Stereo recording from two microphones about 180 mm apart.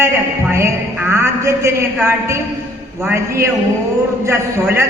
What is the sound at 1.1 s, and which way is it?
A woman's voice, 15° right (ahead or behind).